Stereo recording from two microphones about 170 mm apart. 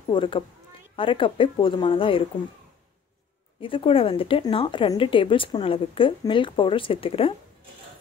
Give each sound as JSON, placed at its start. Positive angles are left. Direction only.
{"t": 0.1, "sound": "speech", "side_deg": 30}
{"t": 3.6, "sound": "speech", "side_deg": 30}